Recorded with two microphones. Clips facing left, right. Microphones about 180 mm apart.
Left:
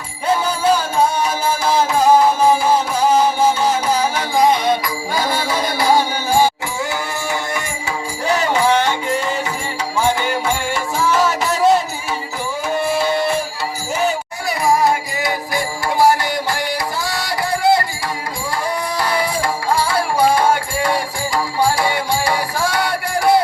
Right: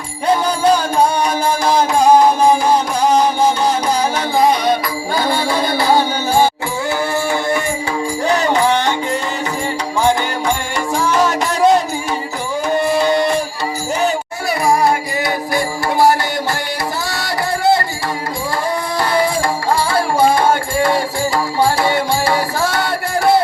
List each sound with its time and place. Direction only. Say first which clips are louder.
0.3 s music: right 3 dB; 5° left (ahead or behind)
8.3 s music: even; 10° left (ahead or behind)
10.9 s music: right 2 dB; 5° left (ahead or behind)
12.8 s music: right 3 dB; 5° left (ahead or behind)
14.8 s music: right 2 dB; 20° left (ahead or behind)
18.9 s music: right 5 dB; 10° left (ahead or behind)
21.8 s music: right 3 dB; 10° left (ahead or behind)